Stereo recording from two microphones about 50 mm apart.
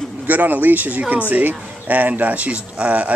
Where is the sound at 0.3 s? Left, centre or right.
Right.